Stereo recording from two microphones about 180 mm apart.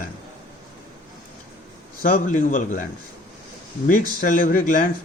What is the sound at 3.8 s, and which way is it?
Speech, 50° left (ahead or behind).